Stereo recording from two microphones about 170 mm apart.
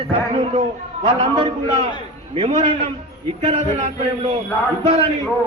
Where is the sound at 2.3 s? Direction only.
30° right (ahead or behind).